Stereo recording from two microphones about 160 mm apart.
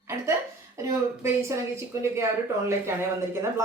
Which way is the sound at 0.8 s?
15° right (ahead or behind).